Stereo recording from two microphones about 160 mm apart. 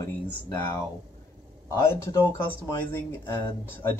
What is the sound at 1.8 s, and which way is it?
Speech, 15° left (ahead or behind).